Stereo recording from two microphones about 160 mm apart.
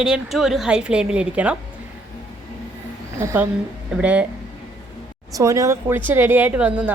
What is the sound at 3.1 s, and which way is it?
A woman's voice, 15° right (ahead or behind).